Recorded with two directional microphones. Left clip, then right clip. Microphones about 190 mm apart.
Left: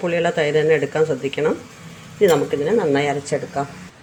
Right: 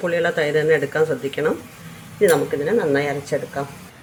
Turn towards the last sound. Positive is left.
turn(degrees=15)  # may be behind; listen again after turning